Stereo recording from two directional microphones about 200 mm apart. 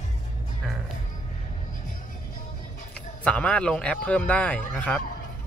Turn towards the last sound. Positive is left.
turn(degrees=5)  # may be behind; listen again after turning